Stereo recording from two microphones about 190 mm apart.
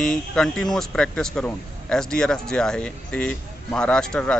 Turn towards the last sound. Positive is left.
turn(degrees=5)  # may be behind; listen again after turning